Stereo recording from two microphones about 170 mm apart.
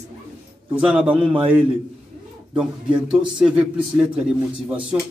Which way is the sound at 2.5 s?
5° right (ahead or behind).